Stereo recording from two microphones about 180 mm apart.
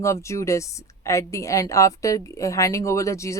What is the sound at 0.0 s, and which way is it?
A woman's voice, 15° left (ahead or behind).